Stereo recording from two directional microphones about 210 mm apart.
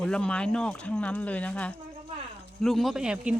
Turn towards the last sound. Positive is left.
turn(degrees=-5)  # may be behind; listen again after turning